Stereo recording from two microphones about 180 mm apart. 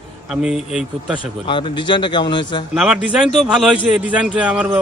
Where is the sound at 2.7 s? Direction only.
5° right (ahead or behind).